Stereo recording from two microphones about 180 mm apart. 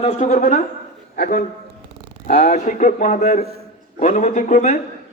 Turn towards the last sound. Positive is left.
turn(degrees=40)  # may be behind; listen again after turning